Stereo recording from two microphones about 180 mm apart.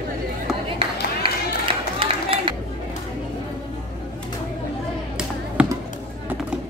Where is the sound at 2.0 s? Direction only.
30° right (ahead or behind).